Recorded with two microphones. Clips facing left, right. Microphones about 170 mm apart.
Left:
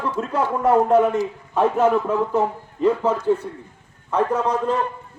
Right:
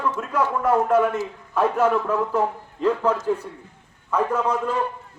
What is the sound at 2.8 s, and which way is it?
Speech, 10° left (ahead or behind).